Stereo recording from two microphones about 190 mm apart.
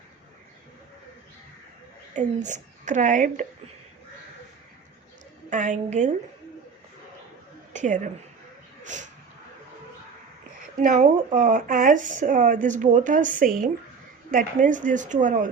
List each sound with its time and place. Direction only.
2.1 s speech: 40° right (ahead or behind)
5.5 s speech: 40° right (ahead or behind)
7.7 s a woman's voice: 40° right (ahead or behind)
10.8 s speech: 40° right (ahead or behind)